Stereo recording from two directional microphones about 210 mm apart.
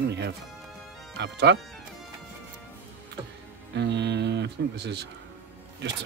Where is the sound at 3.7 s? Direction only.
55° right (ahead or behind).